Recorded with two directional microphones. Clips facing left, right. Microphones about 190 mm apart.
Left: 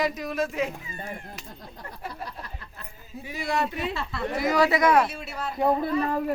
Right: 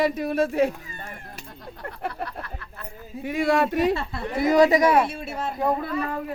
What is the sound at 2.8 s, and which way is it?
Speech, 50° right (ahead or behind).